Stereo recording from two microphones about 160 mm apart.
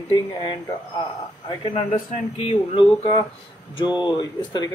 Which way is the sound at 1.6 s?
35° left (ahead or behind).